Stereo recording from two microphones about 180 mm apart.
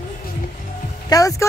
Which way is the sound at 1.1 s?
20° left (ahead or behind).